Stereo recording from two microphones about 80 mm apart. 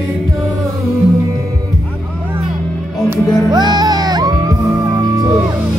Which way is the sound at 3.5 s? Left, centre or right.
Right.